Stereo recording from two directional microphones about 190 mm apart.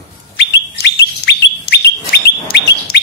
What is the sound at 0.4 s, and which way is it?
Bird, 65° left (ahead or behind).